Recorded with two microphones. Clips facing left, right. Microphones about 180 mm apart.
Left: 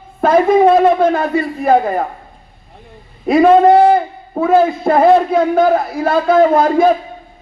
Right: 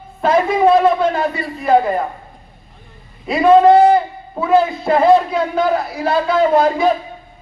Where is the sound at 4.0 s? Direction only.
50° left (ahead or behind).